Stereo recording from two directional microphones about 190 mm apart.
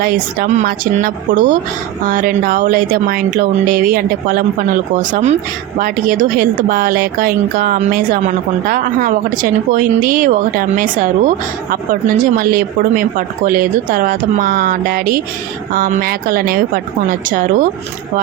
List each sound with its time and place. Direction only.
0.0 s speech: 50° right (ahead or behind)